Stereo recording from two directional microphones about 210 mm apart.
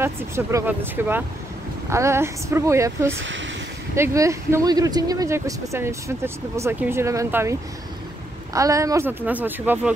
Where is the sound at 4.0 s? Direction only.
15° right (ahead or behind).